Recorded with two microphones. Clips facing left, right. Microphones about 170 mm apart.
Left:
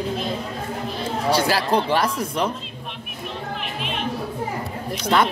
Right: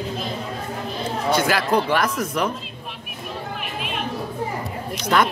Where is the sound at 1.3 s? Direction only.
30° left (ahead or behind).